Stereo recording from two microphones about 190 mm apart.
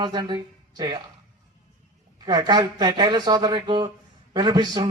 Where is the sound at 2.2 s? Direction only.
20° right (ahead or behind).